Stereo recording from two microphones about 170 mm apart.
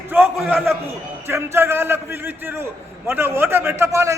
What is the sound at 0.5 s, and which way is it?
A man's voice, 10° right (ahead or behind).